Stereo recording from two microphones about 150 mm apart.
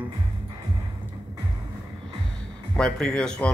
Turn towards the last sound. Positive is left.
turn(degrees=5)  # may be behind; listen again after turning